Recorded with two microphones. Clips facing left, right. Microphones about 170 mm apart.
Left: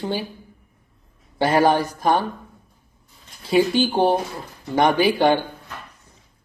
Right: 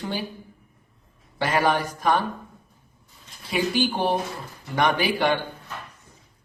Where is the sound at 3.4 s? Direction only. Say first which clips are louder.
Left 6 dB; 30° left (ahead or behind).